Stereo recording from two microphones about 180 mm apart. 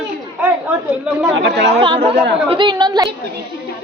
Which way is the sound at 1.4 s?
75° right (ahead or behind).